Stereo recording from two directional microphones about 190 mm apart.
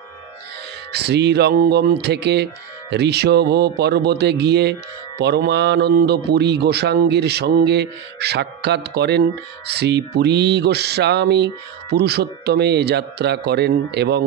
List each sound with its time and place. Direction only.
0.9 s a man's voice: 60° right (ahead or behind)